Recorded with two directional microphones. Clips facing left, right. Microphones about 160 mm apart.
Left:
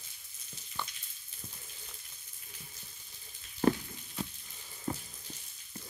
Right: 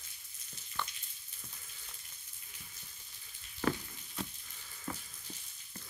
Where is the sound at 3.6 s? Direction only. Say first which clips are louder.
Left 6 dB; 35° left (ahead or behind).